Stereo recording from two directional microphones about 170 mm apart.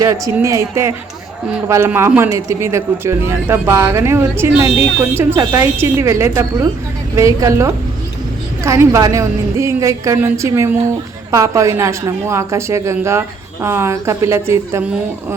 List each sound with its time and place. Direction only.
0.3 s speech: 15° right (ahead or behind)